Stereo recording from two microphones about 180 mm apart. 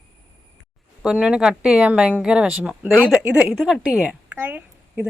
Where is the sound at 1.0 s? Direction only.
5° right (ahead or behind).